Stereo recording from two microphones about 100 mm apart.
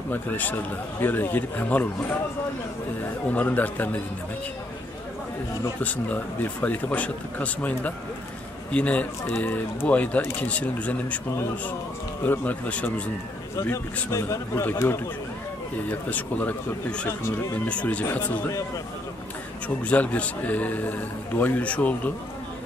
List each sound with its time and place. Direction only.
0.1 s a man's voice: 20° left (ahead or behind)
5.8 s speech: 15° left (ahead or behind)
12.3 s speech: 15° left (ahead or behind)
14.1 s a man's voice: 30° left (ahead or behind); by 18.0 s 15° left (ahead or behind)
19.8 s speech: 15° left (ahead or behind)